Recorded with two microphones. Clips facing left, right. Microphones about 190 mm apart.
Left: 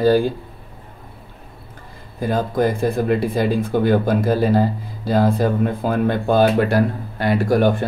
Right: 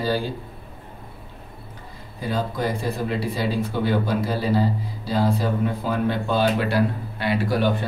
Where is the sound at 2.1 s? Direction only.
50° left (ahead or behind).